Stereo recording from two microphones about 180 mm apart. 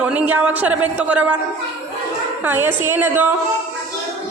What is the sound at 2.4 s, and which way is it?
Speech, 10° right (ahead or behind).